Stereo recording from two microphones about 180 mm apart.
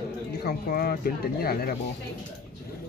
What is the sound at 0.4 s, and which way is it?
Speech, 60° left (ahead or behind).